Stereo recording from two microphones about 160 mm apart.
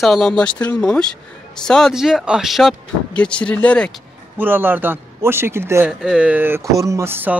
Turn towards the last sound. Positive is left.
turn(degrees=-15)  # may be behind; listen again after turning